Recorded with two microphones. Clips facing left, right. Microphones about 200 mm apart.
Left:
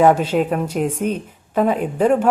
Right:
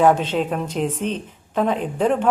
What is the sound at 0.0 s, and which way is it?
A woman's voice, 10° left (ahead or behind).